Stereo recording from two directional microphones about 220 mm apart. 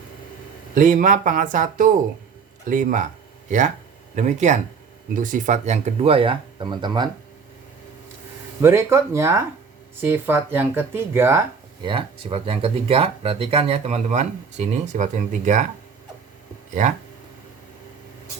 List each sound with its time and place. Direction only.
0.7 s speech: 35° right (ahead or behind)
4.1 s speech: 35° right (ahead or behind)
8.6 s speech: 10° right (ahead or behind)
11.9 s speech: 25° right (ahead or behind)